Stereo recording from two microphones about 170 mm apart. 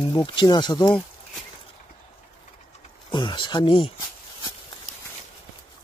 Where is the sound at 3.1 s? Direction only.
30° left (ahead or behind).